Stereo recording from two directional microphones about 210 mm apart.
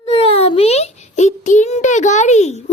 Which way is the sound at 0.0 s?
25° left (ahead or behind).